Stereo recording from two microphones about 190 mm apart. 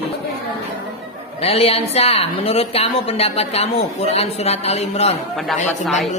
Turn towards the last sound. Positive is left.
turn(degrees=0)  # may be behind; listen again after turning